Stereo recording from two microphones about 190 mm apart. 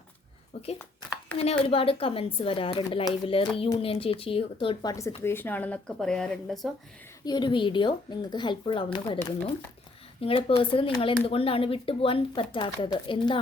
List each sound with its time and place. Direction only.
1.4 s speech: 30° left (ahead or behind); by 6.7 s 5° left (ahead or behind)
7.3 s speech: 25° left (ahead or behind)
10.2 s speech: 30° left (ahead or behind)